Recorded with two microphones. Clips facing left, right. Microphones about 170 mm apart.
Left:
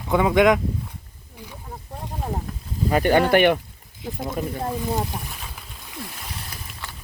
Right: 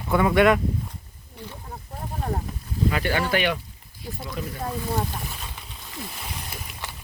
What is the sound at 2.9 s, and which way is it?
Speech, 45° left (ahead or behind).